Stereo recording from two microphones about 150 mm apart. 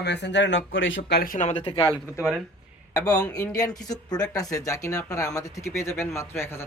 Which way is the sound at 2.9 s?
25° left (ahead or behind).